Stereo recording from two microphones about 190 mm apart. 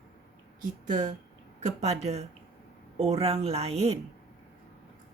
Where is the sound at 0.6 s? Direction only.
40° right (ahead or behind).